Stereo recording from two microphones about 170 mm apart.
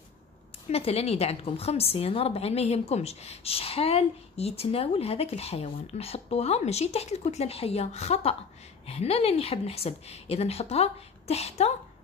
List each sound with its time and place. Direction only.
0.7 s a woman's voice: 35° left (ahead or behind)